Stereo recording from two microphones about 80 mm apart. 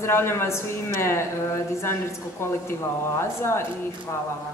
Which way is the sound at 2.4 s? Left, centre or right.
Left.